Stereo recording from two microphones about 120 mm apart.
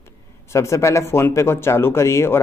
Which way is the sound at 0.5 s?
25° left (ahead or behind).